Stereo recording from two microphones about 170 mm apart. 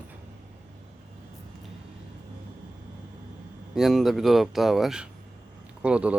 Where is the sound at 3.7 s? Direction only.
Centre (ahead or behind).